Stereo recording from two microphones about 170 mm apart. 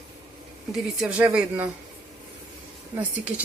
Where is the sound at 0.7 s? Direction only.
5° right (ahead or behind).